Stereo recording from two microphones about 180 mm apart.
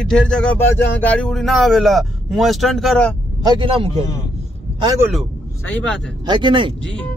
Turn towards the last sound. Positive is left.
turn(degrees=-25)  # may be behind; listen again after turning